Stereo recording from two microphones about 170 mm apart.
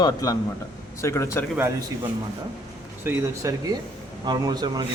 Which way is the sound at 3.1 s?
20° right (ahead or behind).